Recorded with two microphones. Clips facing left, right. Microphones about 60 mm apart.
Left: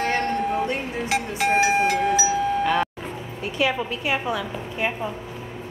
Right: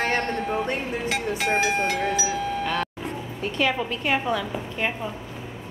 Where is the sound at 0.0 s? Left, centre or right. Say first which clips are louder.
Left 1 dB; right.